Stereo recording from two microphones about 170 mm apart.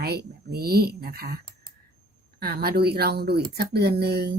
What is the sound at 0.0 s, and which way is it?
Speech, 70° right (ahead or behind).